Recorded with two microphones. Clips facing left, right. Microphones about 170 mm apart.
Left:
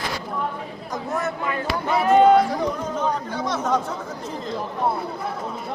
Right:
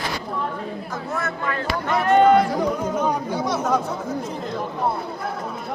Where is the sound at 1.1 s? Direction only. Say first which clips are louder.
Left 1 dB; 15° left (ahead or behind).